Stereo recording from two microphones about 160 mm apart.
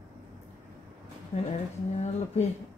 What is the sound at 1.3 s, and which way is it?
Speech, 35° left (ahead or behind).